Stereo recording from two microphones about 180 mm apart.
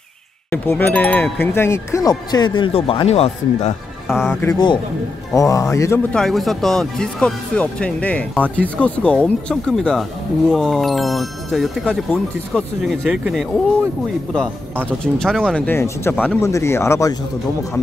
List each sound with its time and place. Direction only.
0.5 s speech: 10° left (ahead or behind); by 3.7 s 35° left (ahead or behind)
4.1 s speech: centre (ahead or behind)
4.4 s a man's voice: 20° left (ahead or behind)
6.1 s speech: centre (ahead or behind)
15.1 s speech: 5° left (ahead or behind)